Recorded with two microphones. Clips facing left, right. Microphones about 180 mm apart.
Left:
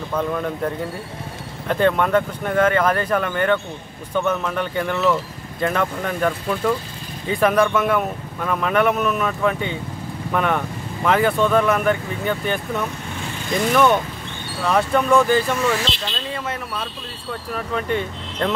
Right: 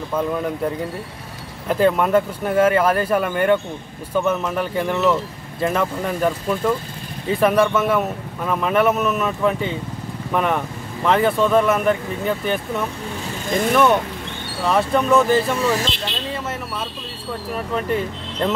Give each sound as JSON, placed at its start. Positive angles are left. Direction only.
{"t": 1.7, "sound": "speech", "side_deg": -5}
{"t": 14.6, "sound": "speech", "side_deg": 0}
{"t": 15.6, "sound": "speech", "side_deg": -40}
{"t": 17.7, "sound": "speech", "side_deg": -5}